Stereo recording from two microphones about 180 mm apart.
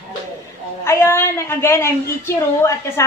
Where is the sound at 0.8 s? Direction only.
15° left (ahead or behind).